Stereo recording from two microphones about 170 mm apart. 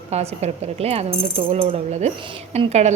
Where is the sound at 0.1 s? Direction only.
40° right (ahead or behind).